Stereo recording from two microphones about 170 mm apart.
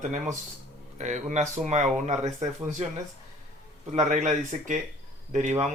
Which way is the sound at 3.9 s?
45° right (ahead or behind).